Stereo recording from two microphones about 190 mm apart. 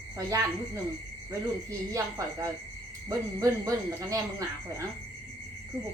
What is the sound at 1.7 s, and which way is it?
Speech, 15° right (ahead or behind).